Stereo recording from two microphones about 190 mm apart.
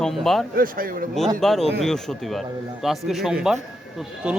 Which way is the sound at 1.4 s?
Centre (ahead or behind).